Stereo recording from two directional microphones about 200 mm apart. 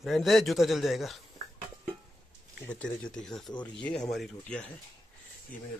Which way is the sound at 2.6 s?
5° left (ahead or behind).